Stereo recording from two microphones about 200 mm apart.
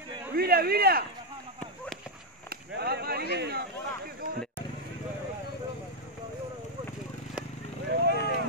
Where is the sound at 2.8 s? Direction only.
55° right (ahead or behind).